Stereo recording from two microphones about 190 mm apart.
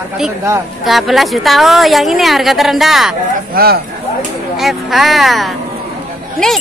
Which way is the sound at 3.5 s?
55° right (ahead or behind).